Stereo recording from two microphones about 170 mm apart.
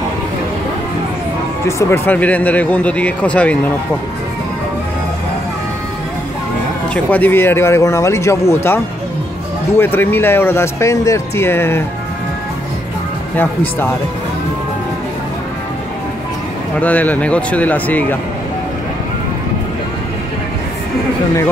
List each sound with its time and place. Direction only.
1.7 s speech: 15° left (ahead or behind)
6.9 s speech: 10° left (ahead or behind)
13.4 s speech: 10° left (ahead or behind)
16.8 s speech: 10° left (ahead or behind)